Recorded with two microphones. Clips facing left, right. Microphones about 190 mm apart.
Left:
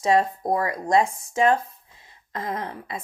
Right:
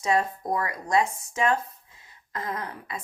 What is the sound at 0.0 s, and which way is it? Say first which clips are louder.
A woman's voice: left 4 dB; 30° left (ahead or behind).